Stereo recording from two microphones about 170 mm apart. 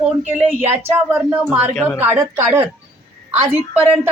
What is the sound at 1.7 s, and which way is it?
Speech, 10° left (ahead or behind).